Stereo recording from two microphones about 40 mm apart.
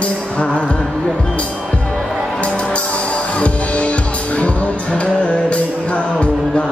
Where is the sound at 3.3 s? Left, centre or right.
Left.